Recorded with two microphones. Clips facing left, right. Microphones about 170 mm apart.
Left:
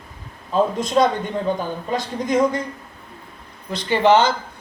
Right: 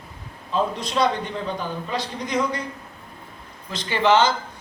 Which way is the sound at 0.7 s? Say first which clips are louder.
Left 4 dB; 45° left (ahead or behind).